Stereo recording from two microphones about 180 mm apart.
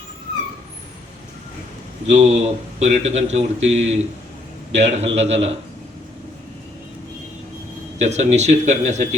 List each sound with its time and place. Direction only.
2.0 s speech: 35° right (ahead or behind)
8.0 s speech: 40° right (ahead or behind)